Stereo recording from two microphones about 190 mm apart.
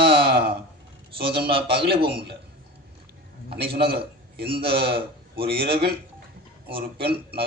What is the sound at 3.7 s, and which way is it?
A man's voice, 55° right (ahead or behind).